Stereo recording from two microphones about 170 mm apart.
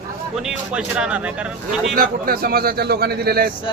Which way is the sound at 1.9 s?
55° right (ahead or behind).